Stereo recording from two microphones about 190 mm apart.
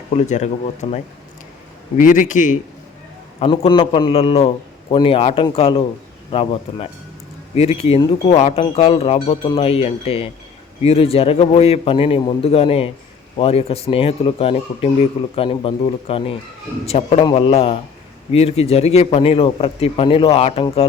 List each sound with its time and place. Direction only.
0.2 s speech: 35° left (ahead or behind)
3.4 s a man's voice: 30° left (ahead or behind)